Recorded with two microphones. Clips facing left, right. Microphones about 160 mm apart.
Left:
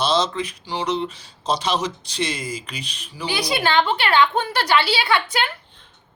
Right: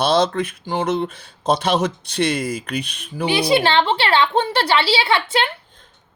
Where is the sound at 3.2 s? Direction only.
25° right (ahead or behind).